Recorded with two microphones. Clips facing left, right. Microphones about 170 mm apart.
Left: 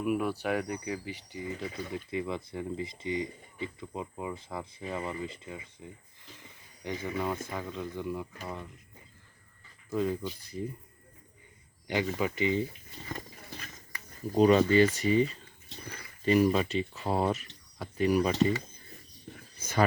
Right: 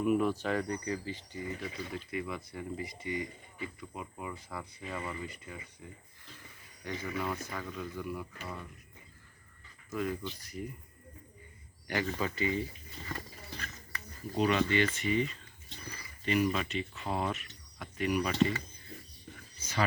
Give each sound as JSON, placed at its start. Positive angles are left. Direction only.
{"t": 0.0, "sound": "speech", "side_deg": 5}
{"t": 6.4, "sound": "a sound", "side_deg": 25}
{"t": 7.5, "sound": "speech", "side_deg": 20}
{"t": 9.9, "sound": "speech", "side_deg": 30}
{"t": 11.9, "sound": "speech", "side_deg": 15}
{"t": 13.1, "sound": "a sound", "side_deg": 15}
{"t": 14.3, "sound": "speech", "side_deg": 35}
{"t": 19.5, "sound": "speech", "side_deg": 50}